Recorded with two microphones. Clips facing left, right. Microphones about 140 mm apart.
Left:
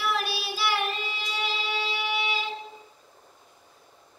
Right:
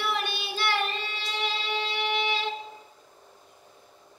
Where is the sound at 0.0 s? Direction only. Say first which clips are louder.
Left 1 dB; centre (ahead or behind).